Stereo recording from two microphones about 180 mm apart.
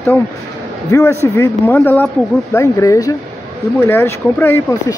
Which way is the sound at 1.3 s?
10° left (ahead or behind).